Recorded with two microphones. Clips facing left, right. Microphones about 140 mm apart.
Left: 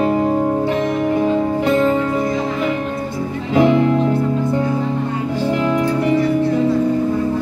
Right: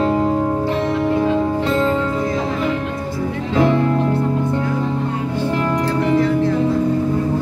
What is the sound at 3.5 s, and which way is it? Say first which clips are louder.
Music: left 3 dB; 15° left (ahead or behind).